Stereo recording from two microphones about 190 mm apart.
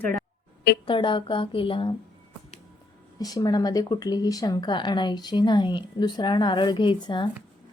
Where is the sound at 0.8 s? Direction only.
25° left (ahead or behind).